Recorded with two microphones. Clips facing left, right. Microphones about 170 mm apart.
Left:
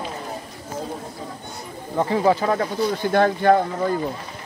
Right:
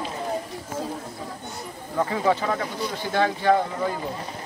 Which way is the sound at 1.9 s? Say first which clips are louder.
Left 4 dB; 30° left (ahead or behind).